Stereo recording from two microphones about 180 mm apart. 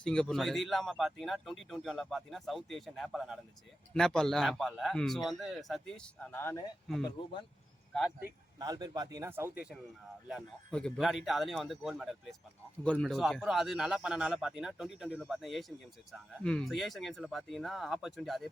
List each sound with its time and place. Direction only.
0.0 s a man's voice: 5° left (ahead or behind)
8.5 s a man's voice: 20° right (ahead or behind)
10.2 s a man's voice: centre (ahead or behind)